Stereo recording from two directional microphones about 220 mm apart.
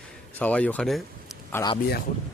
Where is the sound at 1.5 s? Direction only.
15° left (ahead or behind).